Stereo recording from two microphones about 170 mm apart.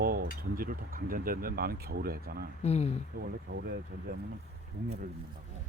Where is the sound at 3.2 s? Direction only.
70° right (ahead or behind).